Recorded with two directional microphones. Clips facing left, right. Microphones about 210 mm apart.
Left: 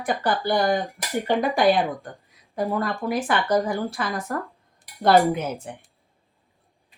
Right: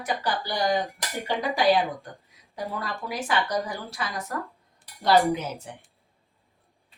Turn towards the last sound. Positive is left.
turn(degrees=55)  # may be behind; listen again after turning